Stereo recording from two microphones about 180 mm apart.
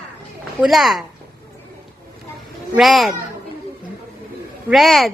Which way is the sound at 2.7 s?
Centre (ahead or behind).